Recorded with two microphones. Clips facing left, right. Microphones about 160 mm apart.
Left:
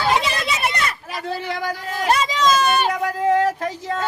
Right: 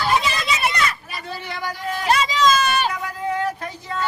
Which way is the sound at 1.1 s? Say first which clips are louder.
Left 5 dB; 90° left.